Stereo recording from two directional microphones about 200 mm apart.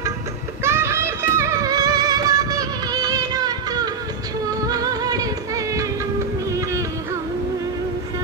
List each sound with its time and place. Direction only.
0.7 s music: 15° right (ahead or behind)